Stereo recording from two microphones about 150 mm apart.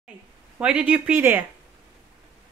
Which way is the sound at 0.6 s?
10° right (ahead or behind).